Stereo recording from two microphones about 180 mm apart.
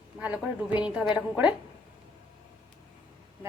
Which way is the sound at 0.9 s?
5° right (ahead or behind).